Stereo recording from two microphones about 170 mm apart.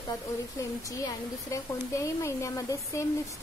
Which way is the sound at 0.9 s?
20° left (ahead or behind).